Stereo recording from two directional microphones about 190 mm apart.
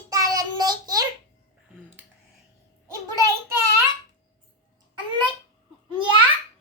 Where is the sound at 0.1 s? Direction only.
20° right (ahead or behind).